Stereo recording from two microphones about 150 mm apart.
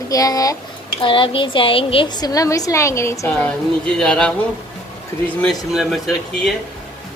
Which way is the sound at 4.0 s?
5° left (ahead or behind).